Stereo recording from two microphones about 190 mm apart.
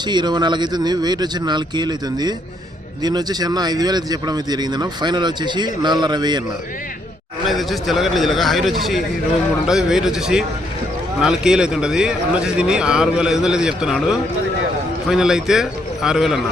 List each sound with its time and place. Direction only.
0.1 s speech: 25° right (ahead or behind)
7.4 s a man's voice: centre (ahead or behind)